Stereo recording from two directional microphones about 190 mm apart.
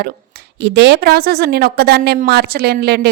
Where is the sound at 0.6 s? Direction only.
65° right (ahead or behind).